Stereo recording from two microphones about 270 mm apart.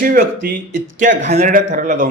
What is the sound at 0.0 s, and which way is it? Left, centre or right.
Speech, right.